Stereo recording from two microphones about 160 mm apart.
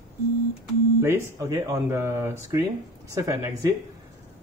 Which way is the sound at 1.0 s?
20° right (ahead or behind).